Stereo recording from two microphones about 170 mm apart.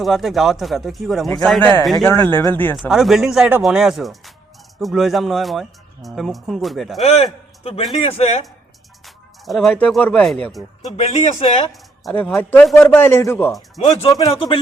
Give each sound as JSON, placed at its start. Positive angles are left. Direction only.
{"t": 0.0, "sound": "a man's voice", "side_deg": 0}
{"t": 2.2, "sound": "a man's voice", "side_deg": 10}
{"t": 2.7, "sound": "a man's voice", "side_deg": 0}
{"t": 7.0, "sound": "speech", "side_deg": 40}
{"t": 9.0, "sound": "a man's voice", "side_deg": 0}
{"t": 10.9, "sound": "speech", "side_deg": 40}
{"t": 12.1, "sound": "a man's voice", "side_deg": 0}
{"t": 13.8, "sound": "speech", "side_deg": 35}